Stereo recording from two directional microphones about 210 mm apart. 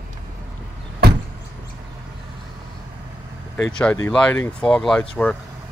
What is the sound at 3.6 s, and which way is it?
Speech, 10° left (ahead or behind).